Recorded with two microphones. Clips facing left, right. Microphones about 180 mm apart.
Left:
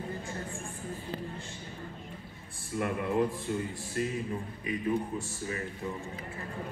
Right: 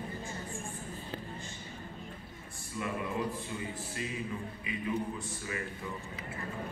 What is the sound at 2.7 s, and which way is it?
Speech, 60° left (ahead or behind).